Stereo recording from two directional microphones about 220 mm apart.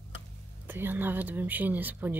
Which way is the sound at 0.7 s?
10° right (ahead or behind).